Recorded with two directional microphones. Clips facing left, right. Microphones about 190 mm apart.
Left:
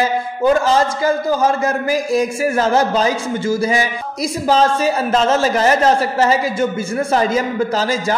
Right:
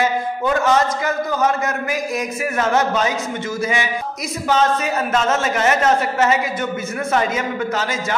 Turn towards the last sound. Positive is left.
turn(degrees=35)  # may be behind; listen again after turning